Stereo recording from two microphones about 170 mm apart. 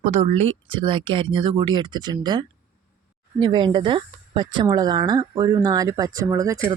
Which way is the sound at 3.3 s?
25° right (ahead or behind).